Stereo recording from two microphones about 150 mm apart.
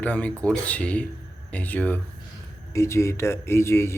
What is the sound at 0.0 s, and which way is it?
Speech, 10° left (ahead or behind).